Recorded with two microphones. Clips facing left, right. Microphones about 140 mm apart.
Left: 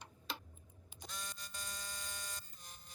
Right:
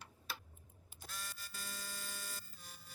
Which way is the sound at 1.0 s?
5° right (ahead or behind).